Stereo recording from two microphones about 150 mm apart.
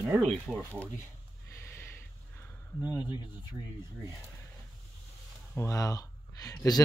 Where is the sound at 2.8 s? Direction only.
10° right (ahead or behind).